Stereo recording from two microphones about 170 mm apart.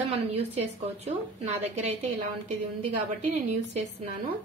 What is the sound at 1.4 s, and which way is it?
Speech, 40° right (ahead or behind).